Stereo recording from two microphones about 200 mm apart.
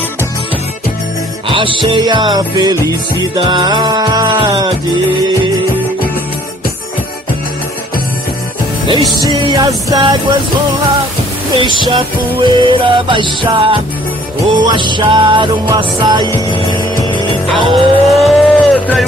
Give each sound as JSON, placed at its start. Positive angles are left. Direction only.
{"t": 1.5, "sound": "music", "side_deg": -25}
{"t": 9.3, "sound": "music", "side_deg": -20}
{"t": 11.5, "sound": "music", "side_deg": -25}
{"t": 17.5, "sound": "music", "side_deg": 0}